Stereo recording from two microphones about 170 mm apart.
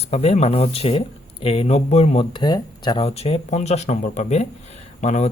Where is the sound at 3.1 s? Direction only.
35° left (ahead or behind).